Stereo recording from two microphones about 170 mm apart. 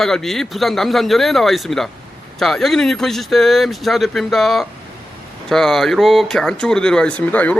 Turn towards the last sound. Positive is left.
turn(degrees=10)  # may be behind; listen again after turning